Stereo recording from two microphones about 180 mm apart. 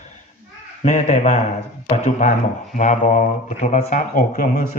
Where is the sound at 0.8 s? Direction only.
40° left (ahead or behind).